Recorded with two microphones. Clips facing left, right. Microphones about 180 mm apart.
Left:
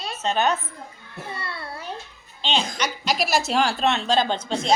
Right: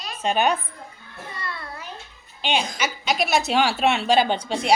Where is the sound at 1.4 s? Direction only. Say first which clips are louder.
Even; 30° left (ahead or behind).